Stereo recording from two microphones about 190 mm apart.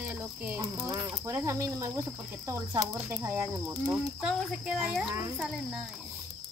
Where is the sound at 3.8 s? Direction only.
Centre (ahead or behind).